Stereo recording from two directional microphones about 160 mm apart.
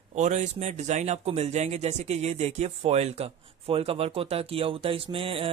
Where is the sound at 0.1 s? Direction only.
45° right (ahead or behind).